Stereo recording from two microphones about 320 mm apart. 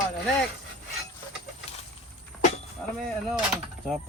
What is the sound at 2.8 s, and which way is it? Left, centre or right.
Speech, centre.